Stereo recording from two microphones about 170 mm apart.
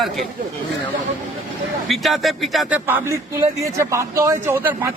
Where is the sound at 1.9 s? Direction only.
Centre (ahead or behind).